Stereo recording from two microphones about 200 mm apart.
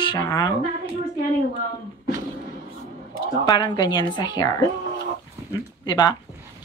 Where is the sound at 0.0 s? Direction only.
20° left (ahead or behind).